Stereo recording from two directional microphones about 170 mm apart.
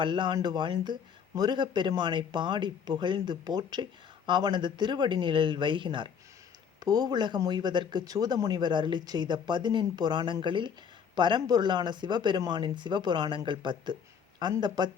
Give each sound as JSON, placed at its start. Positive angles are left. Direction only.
{"t": 0.0, "sound": "speech", "side_deg": -30}